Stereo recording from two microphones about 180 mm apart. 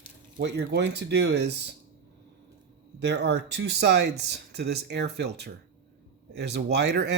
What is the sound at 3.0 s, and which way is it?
Speech, 70° right (ahead or behind).